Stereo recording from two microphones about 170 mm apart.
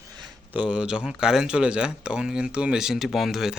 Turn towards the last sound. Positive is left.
turn(degrees=0)  # may be behind; listen again after turning